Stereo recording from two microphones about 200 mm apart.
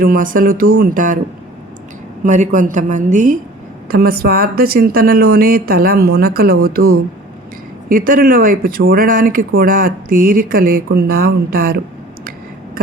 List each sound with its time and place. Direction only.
0.0 s speech: 45° right (ahead or behind)
2.2 s a woman's voice: 40° right (ahead or behind)
3.8 s speech: 50° right (ahead or behind)